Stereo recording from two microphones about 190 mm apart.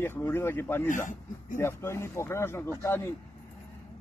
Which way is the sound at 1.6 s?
15° left (ahead or behind).